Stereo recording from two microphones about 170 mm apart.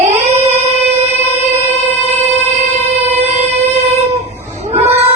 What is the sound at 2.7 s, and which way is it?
Music, 40° right (ahead or behind).